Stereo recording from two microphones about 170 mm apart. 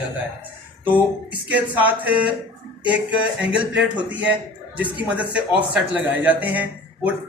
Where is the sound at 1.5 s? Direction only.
10° right (ahead or behind).